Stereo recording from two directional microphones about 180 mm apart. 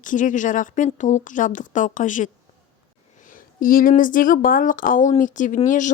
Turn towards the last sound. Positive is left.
turn(degrees=45)  # may be behind; listen again after turning